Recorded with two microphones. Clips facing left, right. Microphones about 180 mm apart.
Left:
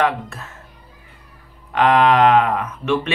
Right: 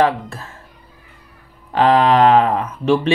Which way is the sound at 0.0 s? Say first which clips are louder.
Right 3 dB; 30° right (ahead or behind).